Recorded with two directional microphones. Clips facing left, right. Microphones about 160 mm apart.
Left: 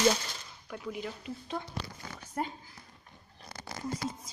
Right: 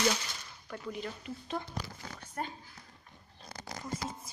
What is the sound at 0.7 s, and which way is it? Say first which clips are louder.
Speech: left 1 dB; 5° left (ahead or behind).